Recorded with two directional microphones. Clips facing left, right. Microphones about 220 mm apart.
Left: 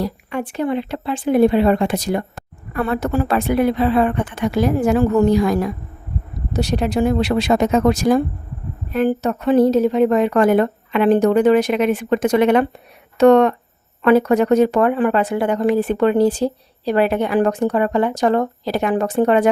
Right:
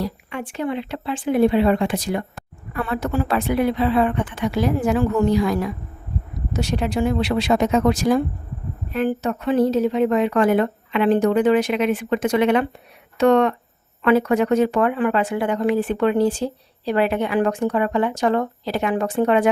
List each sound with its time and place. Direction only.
0.0 s speech: 40° left (ahead or behind)